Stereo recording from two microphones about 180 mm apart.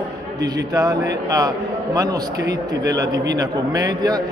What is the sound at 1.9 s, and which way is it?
A man's voice, 20° right (ahead or behind).